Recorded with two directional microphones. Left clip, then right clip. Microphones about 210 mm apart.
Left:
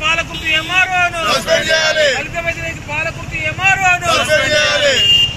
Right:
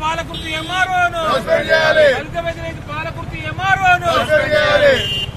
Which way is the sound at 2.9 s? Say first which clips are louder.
Left 7 dB; 45° right (ahead or behind).